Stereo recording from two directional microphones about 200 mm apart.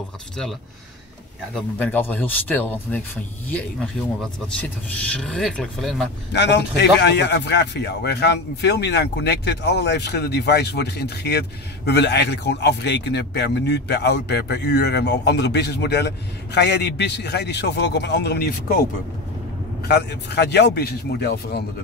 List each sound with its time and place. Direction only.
1.5 s speech: 10° left (ahead or behind)
6.3 s a man's voice: 60° left (ahead or behind)